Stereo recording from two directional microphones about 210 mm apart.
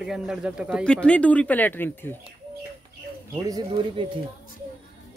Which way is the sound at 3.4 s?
20° right (ahead or behind).